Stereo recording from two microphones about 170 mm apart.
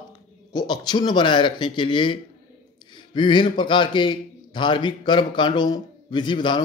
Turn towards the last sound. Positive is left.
turn(degrees=25)  # may be behind; listen again after turning